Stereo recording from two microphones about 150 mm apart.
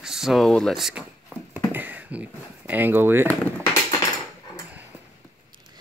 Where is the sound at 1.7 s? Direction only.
10° right (ahead or behind).